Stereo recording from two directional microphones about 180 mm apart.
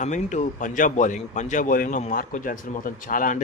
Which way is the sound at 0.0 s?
40° left (ahead or behind).